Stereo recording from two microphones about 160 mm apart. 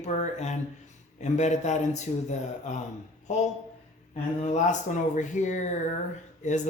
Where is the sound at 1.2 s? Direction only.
45° left (ahead or behind).